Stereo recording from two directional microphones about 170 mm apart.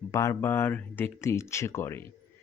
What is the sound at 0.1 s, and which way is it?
Speech, 20° left (ahead or behind).